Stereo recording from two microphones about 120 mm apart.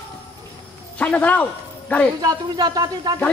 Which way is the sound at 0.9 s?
10° left (ahead or behind).